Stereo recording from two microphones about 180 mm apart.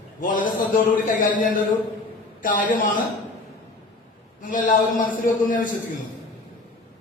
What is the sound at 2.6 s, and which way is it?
Speech, 50° left (ahead or behind).